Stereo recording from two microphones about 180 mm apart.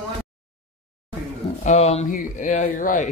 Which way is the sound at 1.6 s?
40° left (ahead or behind).